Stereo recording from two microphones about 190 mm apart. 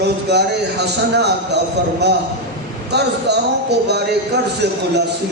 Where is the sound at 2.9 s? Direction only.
60° right (ahead or behind).